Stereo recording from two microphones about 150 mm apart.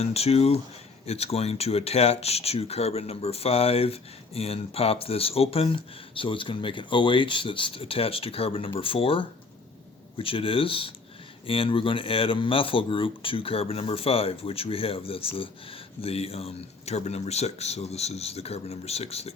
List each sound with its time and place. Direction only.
0.0 s speech: 45° left (ahead or behind)